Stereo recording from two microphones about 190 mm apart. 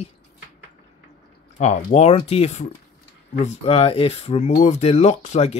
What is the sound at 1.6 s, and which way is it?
Speech, 35° left (ahead or behind).